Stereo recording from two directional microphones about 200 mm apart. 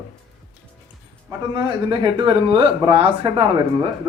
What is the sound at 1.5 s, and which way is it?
Speech, 20° right (ahead or behind).